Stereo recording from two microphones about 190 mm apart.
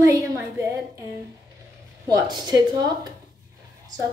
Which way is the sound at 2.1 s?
20° right (ahead or behind).